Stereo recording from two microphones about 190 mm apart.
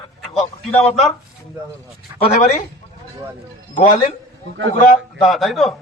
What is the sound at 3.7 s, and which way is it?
Speech, 45° left (ahead or behind).